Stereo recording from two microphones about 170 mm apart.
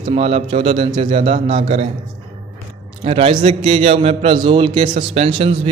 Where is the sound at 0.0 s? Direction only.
35° right (ahead or behind).